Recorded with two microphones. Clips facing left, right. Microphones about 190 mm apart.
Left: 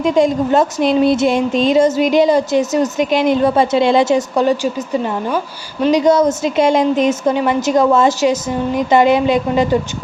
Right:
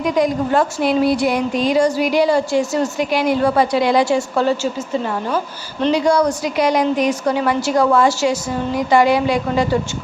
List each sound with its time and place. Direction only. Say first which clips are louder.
0.0 s a woman's voice: left 4 dB; 25° left (ahead or behind)